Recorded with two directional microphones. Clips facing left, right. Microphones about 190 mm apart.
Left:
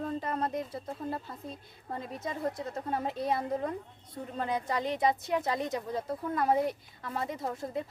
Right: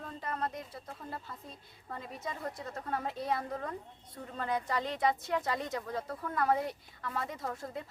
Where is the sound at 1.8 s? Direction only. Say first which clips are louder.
Left 4 dB; 25° left (ahead or behind).